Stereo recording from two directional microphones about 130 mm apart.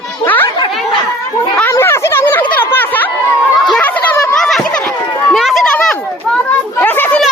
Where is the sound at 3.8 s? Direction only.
10° left (ahead or behind).